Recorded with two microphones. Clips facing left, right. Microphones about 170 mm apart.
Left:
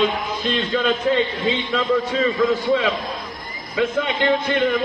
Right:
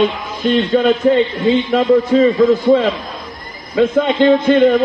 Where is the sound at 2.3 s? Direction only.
50° right (ahead or behind).